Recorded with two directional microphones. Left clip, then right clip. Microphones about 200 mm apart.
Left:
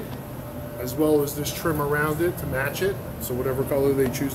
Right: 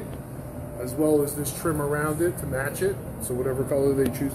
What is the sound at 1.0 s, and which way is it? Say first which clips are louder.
Speech: left 1 dB; 10° right (ahead or behind).